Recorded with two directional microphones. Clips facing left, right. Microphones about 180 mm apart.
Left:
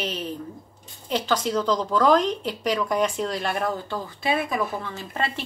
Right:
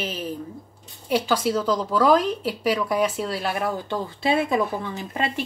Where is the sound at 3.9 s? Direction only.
25° right (ahead or behind).